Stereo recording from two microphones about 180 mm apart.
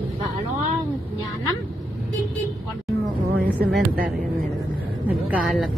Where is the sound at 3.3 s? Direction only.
60° right (ahead or behind).